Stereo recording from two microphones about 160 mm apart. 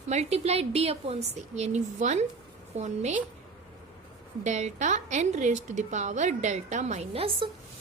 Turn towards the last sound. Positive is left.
turn(degrees=-35)  # may be behind; listen again after turning